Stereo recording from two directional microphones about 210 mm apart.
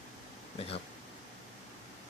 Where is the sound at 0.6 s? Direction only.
30° left (ahead or behind).